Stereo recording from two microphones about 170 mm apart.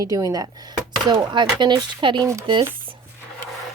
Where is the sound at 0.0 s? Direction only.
20° right (ahead or behind).